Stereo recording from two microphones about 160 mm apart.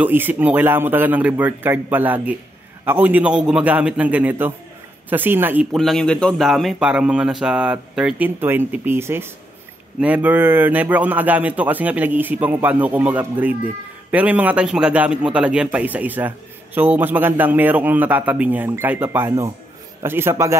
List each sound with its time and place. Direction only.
0.0 s a man's voice: 10° right (ahead or behind)
5.7 s a man's voice: centre (ahead or behind); by 20.5 s 15° right (ahead or behind)